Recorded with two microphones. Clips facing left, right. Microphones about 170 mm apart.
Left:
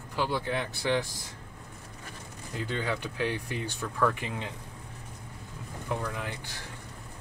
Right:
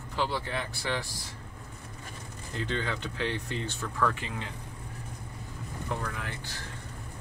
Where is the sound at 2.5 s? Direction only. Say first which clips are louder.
Left 1 dB; 10° left (ahead or behind).